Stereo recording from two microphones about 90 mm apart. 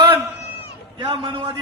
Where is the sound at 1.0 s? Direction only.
65° right (ahead or behind).